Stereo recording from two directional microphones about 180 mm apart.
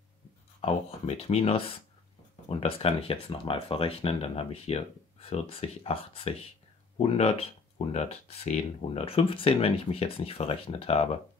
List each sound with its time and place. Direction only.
0.6 s speech: 30° left (ahead or behind)